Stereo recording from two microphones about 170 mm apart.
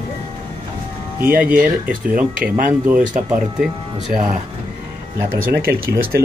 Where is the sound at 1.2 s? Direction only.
55° right (ahead or behind).